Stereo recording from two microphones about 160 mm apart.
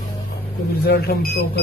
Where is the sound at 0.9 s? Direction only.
75° left (ahead or behind).